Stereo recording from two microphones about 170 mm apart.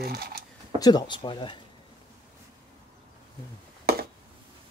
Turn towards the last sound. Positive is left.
turn(degrees=-65)  # may be behind; listen again after turning